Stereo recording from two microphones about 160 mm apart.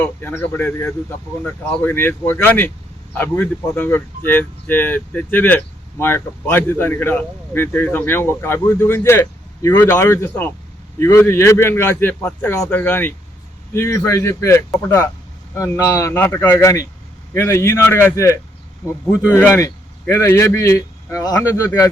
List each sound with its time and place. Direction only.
0.0 s speech: 10° left (ahead or behind)